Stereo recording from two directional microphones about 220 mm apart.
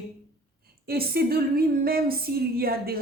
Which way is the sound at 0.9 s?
45° right (ahead or behind).